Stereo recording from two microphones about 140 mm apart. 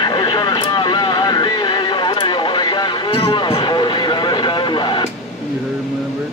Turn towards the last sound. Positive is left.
turn(degrees=35)  # may be behind; listen again after turning